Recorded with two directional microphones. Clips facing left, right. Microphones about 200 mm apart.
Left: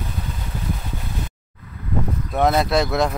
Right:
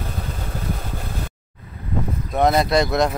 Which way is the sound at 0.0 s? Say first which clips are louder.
Right 1 dB; 45° right (ahead or behind).